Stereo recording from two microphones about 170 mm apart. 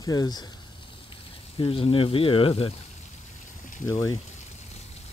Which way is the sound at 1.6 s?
30° left (ahead or behind).